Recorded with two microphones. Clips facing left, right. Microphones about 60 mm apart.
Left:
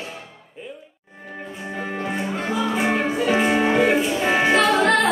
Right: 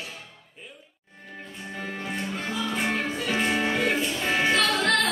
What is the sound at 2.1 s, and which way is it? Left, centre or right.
Music, centre.